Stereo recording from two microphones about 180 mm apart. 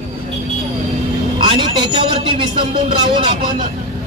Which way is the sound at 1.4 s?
30° right (ahead or behind).